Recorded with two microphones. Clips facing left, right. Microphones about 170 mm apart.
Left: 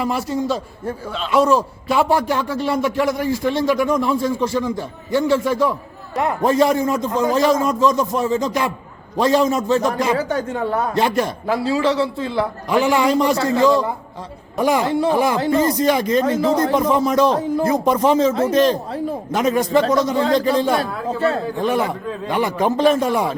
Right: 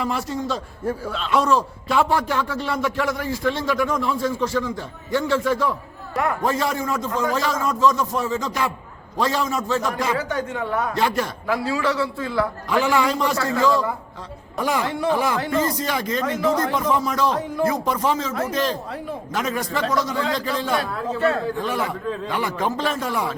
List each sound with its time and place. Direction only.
0.0 s a man's voice: 5° left (ahead or behind)
10.2 s speech: 35° left (ahead or behind)
10.9 s a man's voice: 20° left (ahead or behind)
11.4 s a man's voice: 30° left (ahead or behind)
14.8 s a man's voice: 30° left (ahead or behind)
15.1 s a man's voice: 15° left (ahead or behind)
16.2 s a man's voice: 30° left (ahead or behind)
21.6 s a man's voice: 20° left (ahead or behind)